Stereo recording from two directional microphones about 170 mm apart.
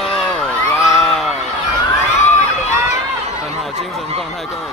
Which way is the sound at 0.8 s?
Centre (ahead or behind).